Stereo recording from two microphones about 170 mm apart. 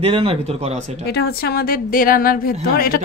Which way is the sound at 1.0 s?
70° left (ahead or behind).